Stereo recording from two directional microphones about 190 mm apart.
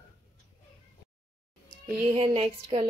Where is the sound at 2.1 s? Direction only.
30° right (ahead or behind).